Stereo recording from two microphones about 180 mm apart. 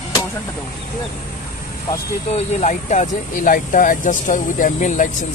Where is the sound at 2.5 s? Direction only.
40° left (ahead or behind).